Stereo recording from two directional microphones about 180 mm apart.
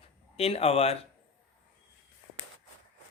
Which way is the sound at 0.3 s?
35° left (ahead or behind).